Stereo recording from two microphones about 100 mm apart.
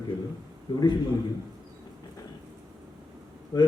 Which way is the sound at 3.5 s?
40° left (ahead or behind).